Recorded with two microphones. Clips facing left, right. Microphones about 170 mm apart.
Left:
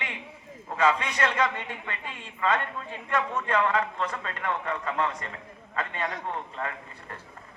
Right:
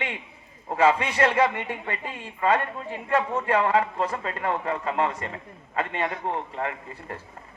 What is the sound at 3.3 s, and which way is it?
Speech, 25° right (ahead or behind).